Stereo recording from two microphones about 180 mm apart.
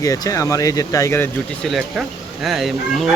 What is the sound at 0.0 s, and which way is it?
Speech, 20° left (ahead or behind).